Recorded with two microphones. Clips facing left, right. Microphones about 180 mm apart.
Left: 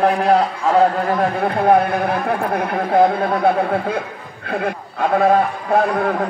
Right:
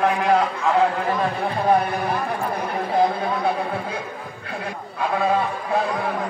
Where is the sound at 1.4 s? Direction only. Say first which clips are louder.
Left 5 dB; 60° left (ahead or behind).